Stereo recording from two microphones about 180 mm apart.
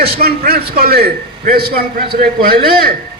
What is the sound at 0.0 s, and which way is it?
A man's voice, 60° right (ahead or behind).